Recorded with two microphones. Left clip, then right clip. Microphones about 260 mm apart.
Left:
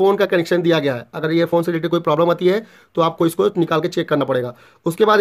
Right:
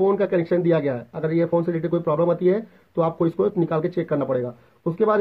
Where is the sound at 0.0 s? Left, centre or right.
Left.